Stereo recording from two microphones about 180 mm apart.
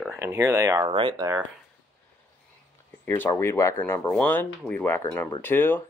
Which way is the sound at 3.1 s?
10° left (ahead or behind).